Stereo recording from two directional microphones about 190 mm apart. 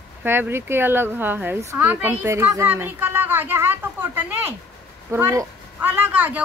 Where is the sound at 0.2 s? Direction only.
10° right (ahead or behind).